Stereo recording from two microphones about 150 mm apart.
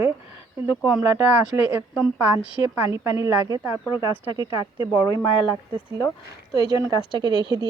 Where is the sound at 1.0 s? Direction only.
15° right (ahead or behind).